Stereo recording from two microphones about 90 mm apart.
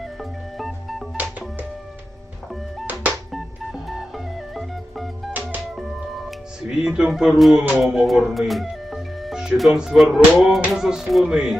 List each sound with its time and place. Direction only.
0.0 s music: centre (ahead or behind)
1.1 s music: 15° right (ahead or behind)
3.3 s music: centre (ahead or behind)
7.8 s speech: 5° right (ahead or behind)